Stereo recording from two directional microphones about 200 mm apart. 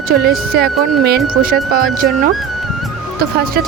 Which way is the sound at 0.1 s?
50° right (ahead or behind).